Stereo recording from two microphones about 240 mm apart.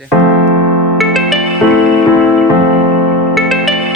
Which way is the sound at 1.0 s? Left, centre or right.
Centre.